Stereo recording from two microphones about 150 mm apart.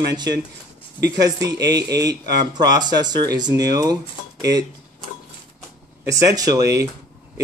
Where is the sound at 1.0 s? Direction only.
25° right (ahead or behind).